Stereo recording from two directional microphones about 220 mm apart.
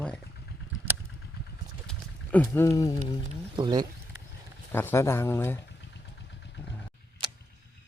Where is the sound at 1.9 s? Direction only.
5° left (ahead or behind).